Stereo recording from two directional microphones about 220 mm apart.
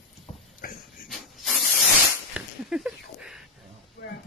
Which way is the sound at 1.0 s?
Centre (ahead or behind).